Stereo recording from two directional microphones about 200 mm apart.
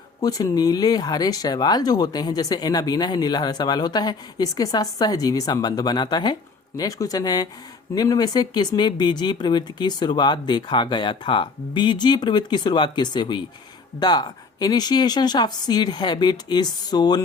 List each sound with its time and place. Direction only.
0.2 s speech: 15° left (ahead or behind)